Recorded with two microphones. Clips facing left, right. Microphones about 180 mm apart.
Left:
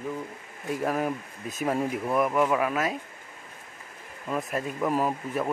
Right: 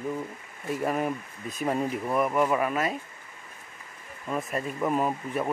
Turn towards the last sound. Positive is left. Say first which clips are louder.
# even
turn(degrees=0)  # may be behind; listen again after turning